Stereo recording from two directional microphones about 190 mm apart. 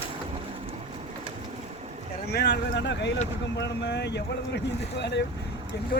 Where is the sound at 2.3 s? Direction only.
65° left (ahead or behind).